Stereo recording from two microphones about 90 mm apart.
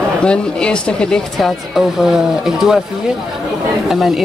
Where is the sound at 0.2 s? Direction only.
10° left (ahead or behind).